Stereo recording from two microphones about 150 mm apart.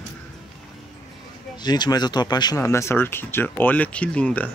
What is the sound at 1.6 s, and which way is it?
Speech, 30° left (ahead or behind).